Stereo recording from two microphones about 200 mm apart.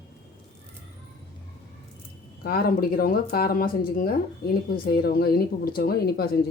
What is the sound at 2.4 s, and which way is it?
Speech, 50° left (ahead or behind).